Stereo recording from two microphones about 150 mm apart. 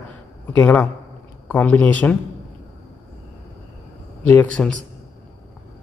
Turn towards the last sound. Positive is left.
turn(degrees=10)  # may be behind; listen again after turning